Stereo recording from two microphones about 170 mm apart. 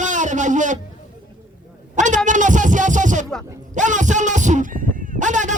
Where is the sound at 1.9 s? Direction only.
45° right (ahead or behind).